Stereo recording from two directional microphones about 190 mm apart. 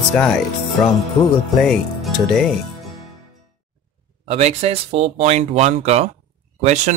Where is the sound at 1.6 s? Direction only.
Centre (ahead or behind).